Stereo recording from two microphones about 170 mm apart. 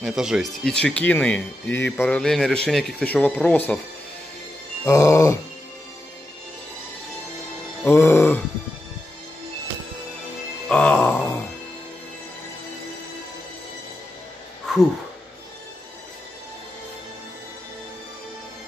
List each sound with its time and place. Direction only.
0.0 s speech: 5° right (ahead or behind)
4.8 s music: 15° left (ahead or behind)
7.8 s music: 15° left (ahead or behind)
10.7 s music: 5° left (ahead or behind)
14.7 s a sound: centre (ahead or behind)